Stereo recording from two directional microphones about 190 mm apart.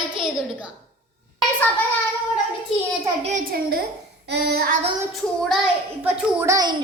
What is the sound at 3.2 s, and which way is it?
Speech, 40° right (ahead or behind).